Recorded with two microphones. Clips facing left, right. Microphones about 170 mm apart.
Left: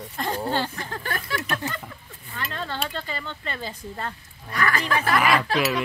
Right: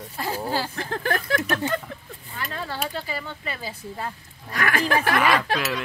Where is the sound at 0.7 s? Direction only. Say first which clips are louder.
Right 5 dB; 65° right (ahead or behind).